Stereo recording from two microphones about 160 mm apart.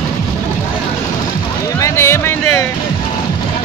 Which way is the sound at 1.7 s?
20° left (ahead or behind).